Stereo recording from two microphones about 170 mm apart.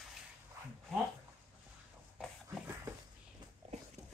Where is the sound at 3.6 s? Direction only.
35° right (ahead or behind).